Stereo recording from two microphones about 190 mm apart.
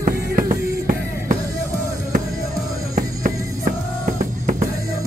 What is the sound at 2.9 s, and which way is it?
Music, 45° right (ahead or behind).